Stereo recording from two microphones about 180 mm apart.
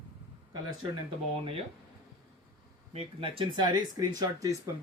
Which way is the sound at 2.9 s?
30° right (ahead or behind).